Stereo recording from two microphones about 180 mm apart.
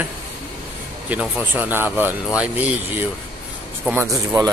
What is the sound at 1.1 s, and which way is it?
Speech, 5° right (ahead or behind).